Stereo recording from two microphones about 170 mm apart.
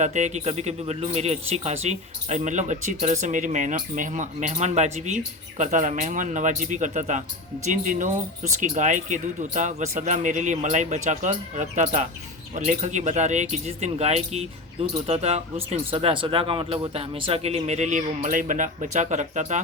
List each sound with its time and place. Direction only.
0.0 s speech: 45° right (ahead or behind)